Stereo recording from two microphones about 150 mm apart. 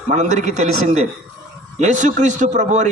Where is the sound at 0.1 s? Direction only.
50° right (ahead or behind).